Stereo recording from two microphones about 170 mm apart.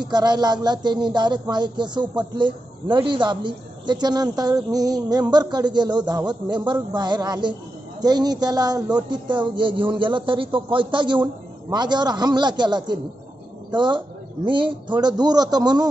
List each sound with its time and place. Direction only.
0.0 s a man's voice: 25° right (ahead or behind)